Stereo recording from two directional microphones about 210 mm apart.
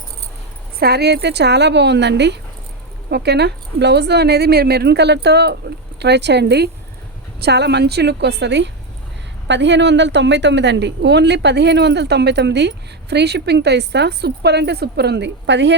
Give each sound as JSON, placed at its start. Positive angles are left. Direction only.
{"t": 0.8, "sound": "a woman's voice", "side_deg": -50}